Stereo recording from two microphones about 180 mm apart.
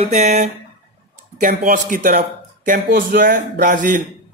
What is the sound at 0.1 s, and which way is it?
Speech, 40° right (ahead or behind).